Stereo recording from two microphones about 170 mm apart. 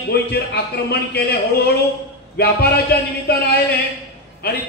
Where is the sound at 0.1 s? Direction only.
70° left (ahead or behind).